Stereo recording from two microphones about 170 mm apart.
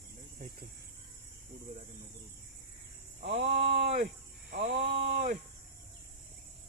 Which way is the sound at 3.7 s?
75° right (ahead or behind).